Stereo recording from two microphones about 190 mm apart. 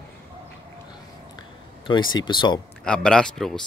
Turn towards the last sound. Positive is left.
turn(degrees=5)  # may be behind; listen again after turning